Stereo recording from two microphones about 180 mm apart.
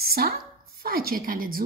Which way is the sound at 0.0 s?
55° right (ahead or behind).